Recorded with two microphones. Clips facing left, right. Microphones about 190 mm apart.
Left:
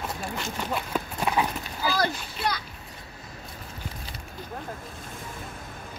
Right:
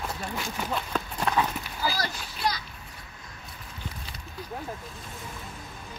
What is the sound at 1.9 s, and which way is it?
Speech, 55° left (ahead or behind).